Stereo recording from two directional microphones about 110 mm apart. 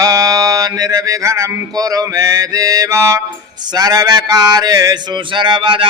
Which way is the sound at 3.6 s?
40° right (ahead or behind).